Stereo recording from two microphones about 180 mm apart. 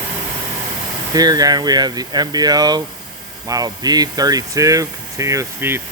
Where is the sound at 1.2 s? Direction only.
20° right (ahead or behind).